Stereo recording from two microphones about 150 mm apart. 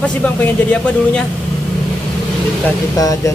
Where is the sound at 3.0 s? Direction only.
25° left (ahead or behind).